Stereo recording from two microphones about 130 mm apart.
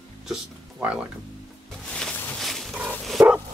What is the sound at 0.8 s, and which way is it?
Speech, 10° right (ahead or behind).